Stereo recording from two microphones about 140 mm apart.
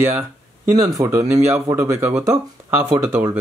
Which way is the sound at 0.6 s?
25° right (ahead or behind).